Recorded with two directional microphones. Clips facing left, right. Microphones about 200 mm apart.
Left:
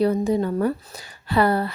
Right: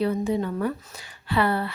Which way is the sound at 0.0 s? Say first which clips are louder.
Left 4 dB; 40° left (ahead or behind).